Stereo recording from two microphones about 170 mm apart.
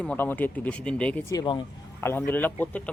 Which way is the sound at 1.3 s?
25° left (ahead or behind).